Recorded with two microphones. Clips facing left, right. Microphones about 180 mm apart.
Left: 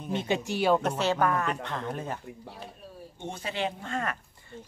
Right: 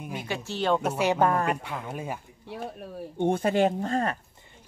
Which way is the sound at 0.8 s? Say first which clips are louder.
Right 3 dB; 10° right (ahead or behind).